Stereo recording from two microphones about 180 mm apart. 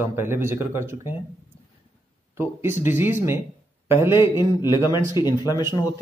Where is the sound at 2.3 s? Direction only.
15° right (ahead or behind).